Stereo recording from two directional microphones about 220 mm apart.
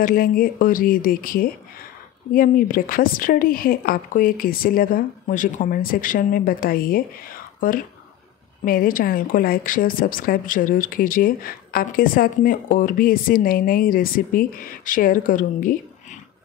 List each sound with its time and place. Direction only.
0.0 s a woman's voice: 40° left (ahead or behind)